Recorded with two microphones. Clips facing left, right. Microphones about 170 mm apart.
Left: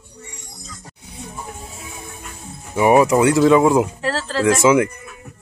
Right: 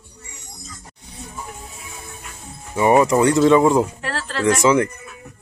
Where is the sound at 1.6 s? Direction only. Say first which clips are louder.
Left 3 dB; 25° left (ahead or behind).